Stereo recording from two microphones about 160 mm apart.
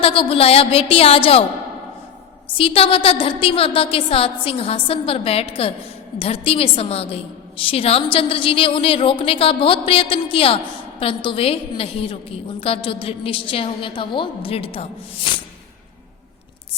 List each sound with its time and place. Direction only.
0.0 s a woman's voice: 35° left (ahead or behind)
2.6 s a woman's voice: 35° left (ahead or behind)